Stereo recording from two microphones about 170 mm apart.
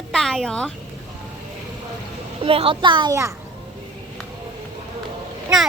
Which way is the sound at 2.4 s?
35° right (ahead or behind).